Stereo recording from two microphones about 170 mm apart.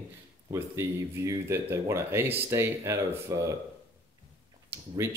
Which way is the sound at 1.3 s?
15° right (ahead or behind).